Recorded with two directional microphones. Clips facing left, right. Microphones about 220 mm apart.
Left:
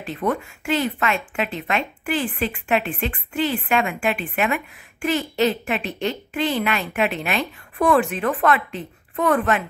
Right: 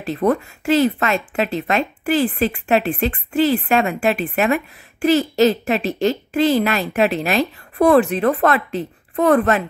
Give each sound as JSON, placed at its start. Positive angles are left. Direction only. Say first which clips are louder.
{"t": 0.0, "sound": "a woman's voice", "louder": "right 6 dB", "side_deg": -40}